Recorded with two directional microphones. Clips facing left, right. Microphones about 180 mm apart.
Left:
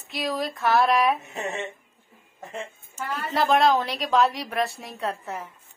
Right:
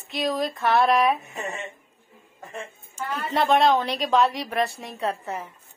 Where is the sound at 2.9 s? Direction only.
Centre (ahead or behind).